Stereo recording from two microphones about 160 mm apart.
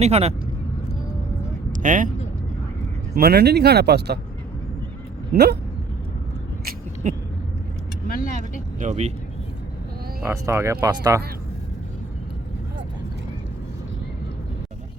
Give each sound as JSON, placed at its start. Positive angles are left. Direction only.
{"t": 0.0, "sound": "speech", "side_deg": -40}
{"t": 1.7, "sound": "speech", "side_deg": -55}
{"t": 3.2, "sound": "speech", "side_deg": -75}
{"t": 5.3, "sound": "speech", "side_deg": -85}
{"t": 6.7, "sound": "vehicle", "side_deg": -55}
{"t": 8.0, "sound": "speech", "side_deg": 60}
{"t": 8.8, "sound": "speech", "side_deg": -45}
{"t": 10.2, "sound": "speech", "side_deg": -15}